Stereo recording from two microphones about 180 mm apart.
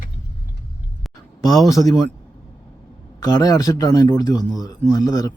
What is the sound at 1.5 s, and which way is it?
Speech, centre (ahead or behind).